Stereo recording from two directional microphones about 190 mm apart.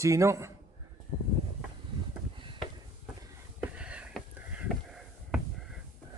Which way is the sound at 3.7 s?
5° right (ahead or behind).